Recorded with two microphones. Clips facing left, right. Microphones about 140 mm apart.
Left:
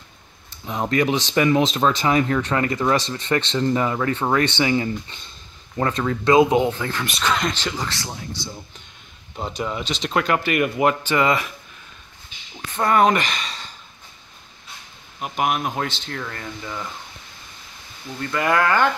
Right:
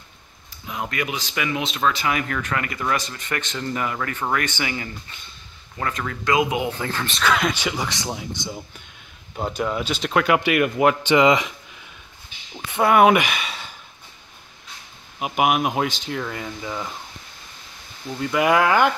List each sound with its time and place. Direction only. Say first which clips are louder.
0.7 s speech: left 7 dB; 35° left (ahead or behind)
6.8 s speech: even; 25° right (ahead or behind)
7.2 s speech: right 2 dB; 5° right (ahead or behind)
9.4 s speech: right 2 dB; 5° right (ahead or behind)
11.0 s speech: right 4 dB; 15° right (ahead or behind)
12.5 s speech: right 2 dB; 10° right (ahead or behind)
15.1 s speech: right 3 dB; 10° right (ahead or behind)
18.2 s speech: right 2 dB; 10° right (ahead or behind)